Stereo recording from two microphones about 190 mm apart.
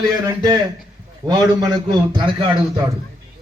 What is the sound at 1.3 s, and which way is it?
A man's voice, 20° right (ahead or behind).